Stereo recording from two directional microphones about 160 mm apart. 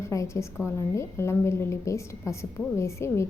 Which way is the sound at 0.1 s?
20° left (ahead or behind).